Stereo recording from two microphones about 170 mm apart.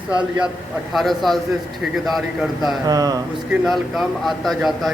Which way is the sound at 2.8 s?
20° right (ahead or behind).